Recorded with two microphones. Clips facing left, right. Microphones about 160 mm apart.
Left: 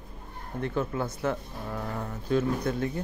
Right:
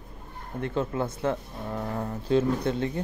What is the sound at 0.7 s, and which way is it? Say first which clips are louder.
Speech: right 3 dB; 25° right (ahead or behind).